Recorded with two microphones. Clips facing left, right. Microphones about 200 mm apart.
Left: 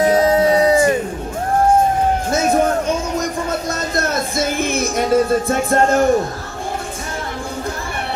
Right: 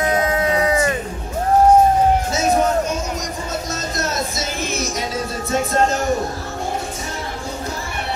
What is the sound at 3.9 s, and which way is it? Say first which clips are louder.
Music: left 5 dB; 55° left (ahead or behind).